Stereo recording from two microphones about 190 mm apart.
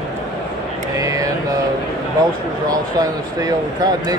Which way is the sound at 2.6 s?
20° right (ahead or behind).